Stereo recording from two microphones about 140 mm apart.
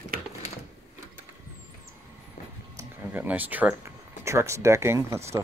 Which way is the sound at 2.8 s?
15° right (ahead or behind).